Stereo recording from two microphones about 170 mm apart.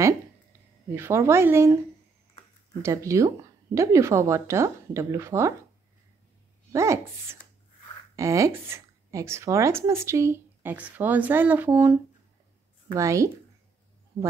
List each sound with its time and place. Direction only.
0.9 s speech: 15° right (ahead or behind)
2.8 s speech: 15° right (ahead or behind)
6.7 s speech: 15° right (ahead or behind)